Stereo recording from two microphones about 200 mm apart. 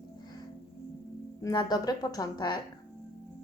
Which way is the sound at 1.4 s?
20° left (ahead or behind).